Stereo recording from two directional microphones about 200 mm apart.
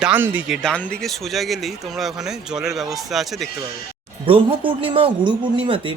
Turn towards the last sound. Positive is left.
turn(degrees=-25)  # may be behind; listen again after turning